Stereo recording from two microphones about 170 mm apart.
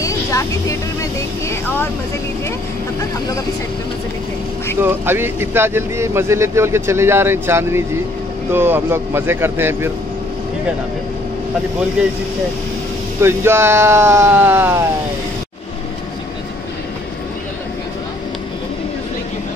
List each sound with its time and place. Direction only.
0.0 s vehicle: 20° left (ahead or behind)
4.7 s speech: 15° right (ahead or behind)
13.2 s speech: 15° right (ahead or behind)